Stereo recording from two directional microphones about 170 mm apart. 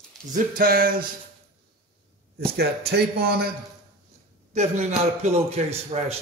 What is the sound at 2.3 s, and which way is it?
A man's voice, 70° right (ahead or behind).